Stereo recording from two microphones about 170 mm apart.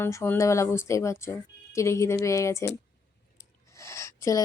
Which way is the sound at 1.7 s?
15° left (ahead or behind).